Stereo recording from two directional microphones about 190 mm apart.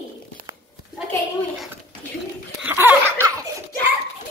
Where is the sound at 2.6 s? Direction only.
10° right (ahead or behind).